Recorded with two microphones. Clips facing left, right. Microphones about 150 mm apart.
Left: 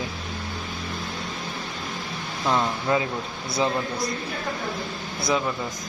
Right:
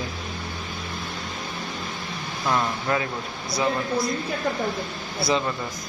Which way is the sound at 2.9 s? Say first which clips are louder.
Left 2 dB; 20° left (ahead or behind).